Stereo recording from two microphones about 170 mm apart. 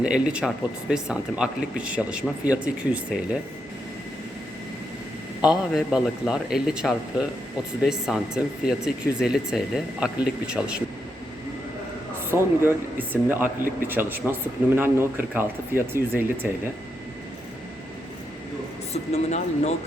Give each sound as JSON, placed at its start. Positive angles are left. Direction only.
{"t": 0.0, "sound": "speech", "side_deg": -5}
{"t": 5.4, "sound": "speech", "side_deg": -5}
{"t": 12.3, "sound": "speech", "side_deg": -10}
{"t": 19.1, "sound": "speech", "side_deg": 40}